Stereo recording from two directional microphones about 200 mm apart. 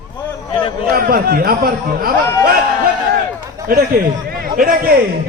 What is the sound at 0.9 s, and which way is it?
Speech, 50° right (ahead or behind).